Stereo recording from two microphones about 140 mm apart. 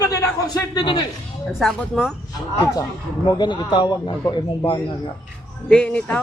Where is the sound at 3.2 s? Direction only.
30° left (ahead or behind).